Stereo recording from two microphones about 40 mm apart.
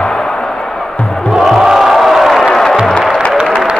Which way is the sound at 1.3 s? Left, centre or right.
Centre.